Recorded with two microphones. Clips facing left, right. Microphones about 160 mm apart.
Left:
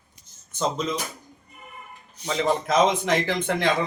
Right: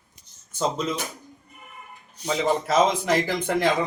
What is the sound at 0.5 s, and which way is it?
Speech, 5° right (ahead or behind).